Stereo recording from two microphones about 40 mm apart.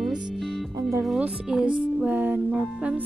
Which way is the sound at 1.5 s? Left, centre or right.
Right.